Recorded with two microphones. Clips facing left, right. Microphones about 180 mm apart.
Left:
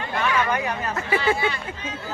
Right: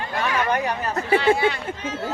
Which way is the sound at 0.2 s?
35° right (ahead or behind).